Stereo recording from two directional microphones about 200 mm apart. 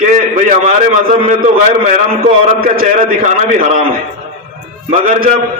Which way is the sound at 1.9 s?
45° right (ahead or behind).